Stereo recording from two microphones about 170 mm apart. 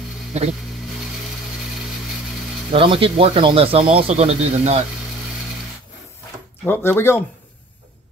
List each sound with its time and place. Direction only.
0.3 s a sound: 40° right (ahead or behind)
2.7 s speech: 30° right (ahead or behind)
6.6 s speech: 10° left (ahead or behind)